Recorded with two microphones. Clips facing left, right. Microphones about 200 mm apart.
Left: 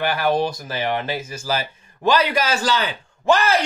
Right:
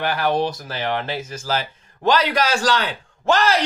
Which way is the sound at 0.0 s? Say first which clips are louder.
Left 1 dB; 10° left (ahead or behind).